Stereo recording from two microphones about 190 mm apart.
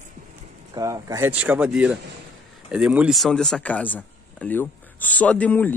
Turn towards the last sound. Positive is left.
turn(degrees=10)  # may be behind; listen again after turning